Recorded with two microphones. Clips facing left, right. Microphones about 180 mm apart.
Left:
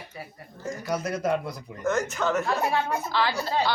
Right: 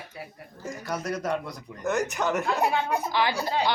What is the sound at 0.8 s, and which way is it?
Speech, centre (ahead or behind).